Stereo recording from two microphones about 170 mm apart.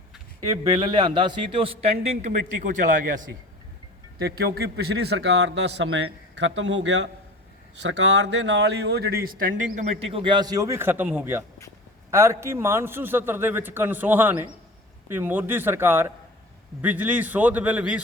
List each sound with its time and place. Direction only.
0.7 s speech: 25° right (ahead or behind)
4.2 s a man's voice: 65° right (ahead or behind)
9.7 s a man's voice: 40° right (ahead or behind); by 18.0 s 5° right (ahead or behind)